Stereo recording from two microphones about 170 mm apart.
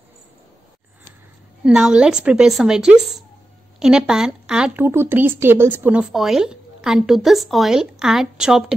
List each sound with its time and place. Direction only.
1.6 s a woman's voice: 5° right (ahead or behind)